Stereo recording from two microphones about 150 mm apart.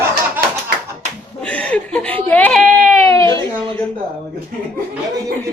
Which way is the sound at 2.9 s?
15° left (ahead or behind).